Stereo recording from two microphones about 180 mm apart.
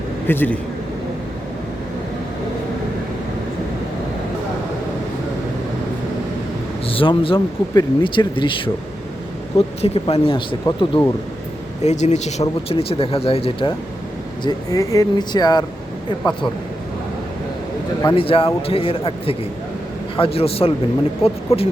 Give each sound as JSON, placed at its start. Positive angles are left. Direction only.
{"t": 0.3, "sound": "speech", "side_deg": 10}
{"t": 6.8, "sound": "speech", "side_deg": 30}
{"t": 11.8, "sound": "speech", "side_deg": 40}
{"t": 14.4, "sound": "speech", "side_deg": 20}
{"t": 18.1, "sound": "speech", "side_deg": 30}